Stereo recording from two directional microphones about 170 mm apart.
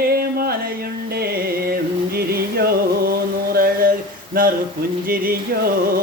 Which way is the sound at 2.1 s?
65° right (ahead or behind).